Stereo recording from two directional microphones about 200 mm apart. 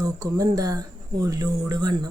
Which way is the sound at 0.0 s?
15° right (ahead or behind).